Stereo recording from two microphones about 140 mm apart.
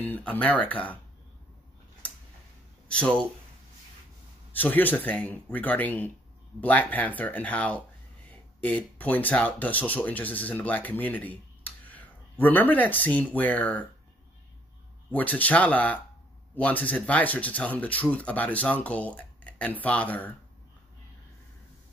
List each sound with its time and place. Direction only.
0.0 s speech: 10° left (ahead or behind)
2.9 s speech: 10° left (ahead or behind)
4.5 s speech: 10° left (ahead or behind)
15.0 s speech: 10° left (ahead or behind)